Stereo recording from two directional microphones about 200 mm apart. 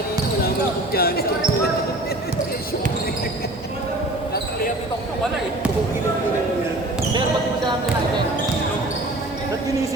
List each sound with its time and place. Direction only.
0.9 s speech: 50° left (ahead or behind)